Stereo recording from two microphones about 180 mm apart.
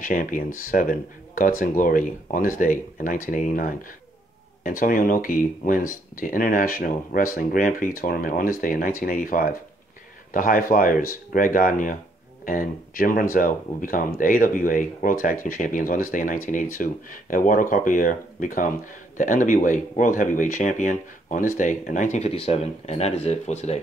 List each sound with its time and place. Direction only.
0.0 s speech: 50° left (ahead or behind)